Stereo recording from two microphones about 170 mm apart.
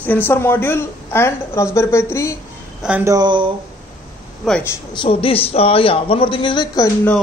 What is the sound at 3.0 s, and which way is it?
Speech, 25° right (ahead or behind).